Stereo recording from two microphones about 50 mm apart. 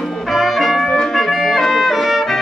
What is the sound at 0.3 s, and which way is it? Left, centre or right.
Music, centre.